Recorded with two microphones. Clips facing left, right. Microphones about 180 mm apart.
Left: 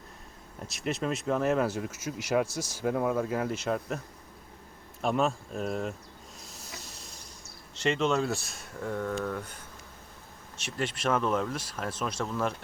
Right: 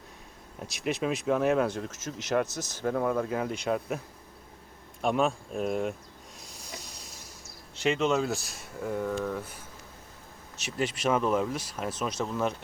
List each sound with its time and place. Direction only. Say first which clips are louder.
0.6 s speech: right 2 dB; centre (ahead or behind)
5.0 s speech: right 1 dB; centre (ahead or behind)
6.4 s hiss: right 3 dB; centre (ahead or behind)
7.8 s speech: right 1 dB; centre (ahead or behind)
10.7 s speech: right 2 dB; 5° right (ahead or behind)